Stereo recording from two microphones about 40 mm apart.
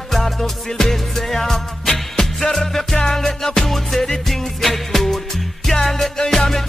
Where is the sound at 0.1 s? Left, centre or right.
Centre.